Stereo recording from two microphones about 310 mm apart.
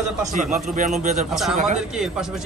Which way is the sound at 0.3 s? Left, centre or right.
Right.